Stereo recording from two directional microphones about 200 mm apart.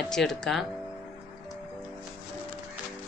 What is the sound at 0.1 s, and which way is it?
Speech, centre (ahead or behind).